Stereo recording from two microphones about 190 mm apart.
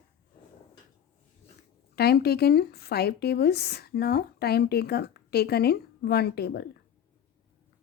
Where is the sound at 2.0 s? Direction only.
55° left (ahead or behind).